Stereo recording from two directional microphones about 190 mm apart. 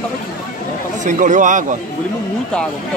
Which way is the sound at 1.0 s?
40° right (ahead or behind).